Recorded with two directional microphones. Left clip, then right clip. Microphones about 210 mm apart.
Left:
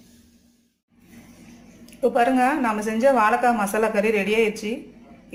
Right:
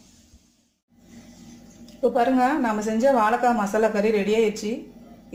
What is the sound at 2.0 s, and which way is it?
Speech, centre (ahead or behind).